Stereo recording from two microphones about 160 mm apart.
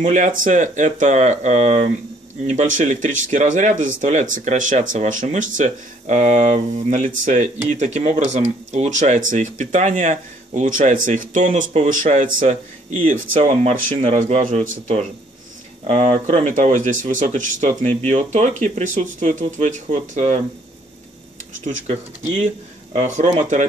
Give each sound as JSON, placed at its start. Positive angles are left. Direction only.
{"t": 0.0, "sound": "speech", "side_deg": -50}
{"t": 21.6, "sound": "speech", "side_deg": -45}